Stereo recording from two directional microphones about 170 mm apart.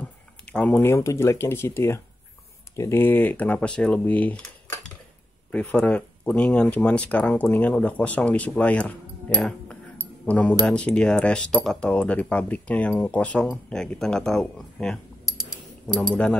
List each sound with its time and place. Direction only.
0.0 s speech: 10° left (ahead or behind)